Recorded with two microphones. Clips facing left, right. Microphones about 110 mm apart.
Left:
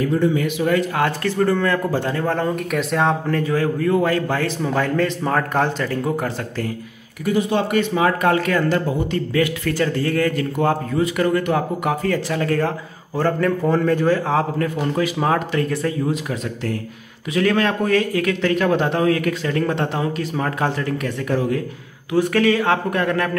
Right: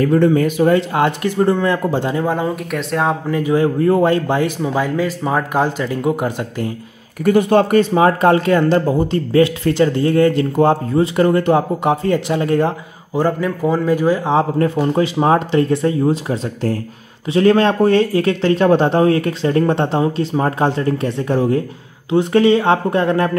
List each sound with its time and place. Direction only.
0.0 s speech: 60° right (ahead or behind)
0.4 s speech: 40° right (ahead or behind)
0.7 s speech: 20° right (ahead or behind)
2.7 s a man's voice: centre (ahead or behind); by 3.7 s 20° right (ahead or behind)
3.8 s a man's voice: 30° right (ahead or behind)
7.2 s speech: 55° right (ahead or behind)
7.7 s speech: 35° right (ahead or behind); by 14.4 s 15° right (ahead or behind)
14.6 s speech: 30° right (ahead or behind)